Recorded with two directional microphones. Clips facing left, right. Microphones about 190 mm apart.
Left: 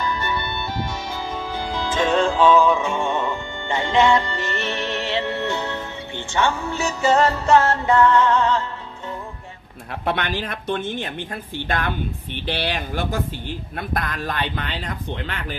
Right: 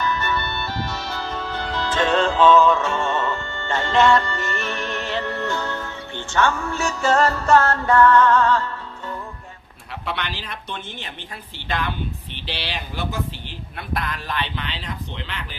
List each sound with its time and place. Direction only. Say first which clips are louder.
0.0 s music: right 1 dB; 15° left (ahead or behind)
9.9 s speech: left 5 dB; 50° left (ahead or behind)